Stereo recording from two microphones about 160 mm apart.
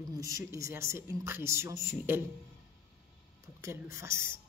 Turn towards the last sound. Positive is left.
turn(degrees=-15)  # may be behind; listen again after turning